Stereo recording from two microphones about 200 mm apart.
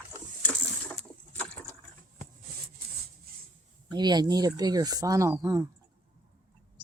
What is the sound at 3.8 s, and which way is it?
Speech, 20° right (ahead or behind).